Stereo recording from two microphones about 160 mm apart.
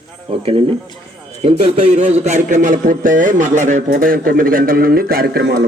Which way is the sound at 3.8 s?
65° right (ahead or behind).